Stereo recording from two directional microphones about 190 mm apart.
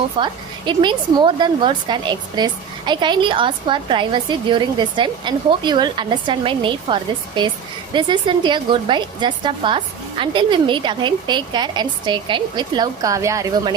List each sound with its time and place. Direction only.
0.2 s a woman's voice: 25° right (ahead or behind)